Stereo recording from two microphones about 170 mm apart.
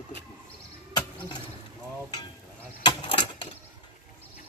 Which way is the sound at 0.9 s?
25° left (ahead or behind).